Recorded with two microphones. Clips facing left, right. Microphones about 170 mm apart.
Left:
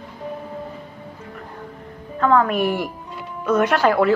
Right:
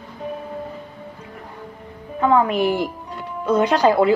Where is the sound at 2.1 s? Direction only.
15° right (ahead or behind).